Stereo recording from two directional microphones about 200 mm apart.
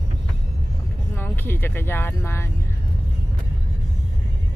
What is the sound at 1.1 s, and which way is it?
Speech, 10° left (ahead or behind).